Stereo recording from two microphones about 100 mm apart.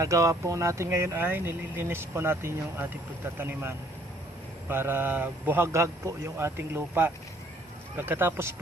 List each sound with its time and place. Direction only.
0.0 s speech: 30° right (ahead or behind)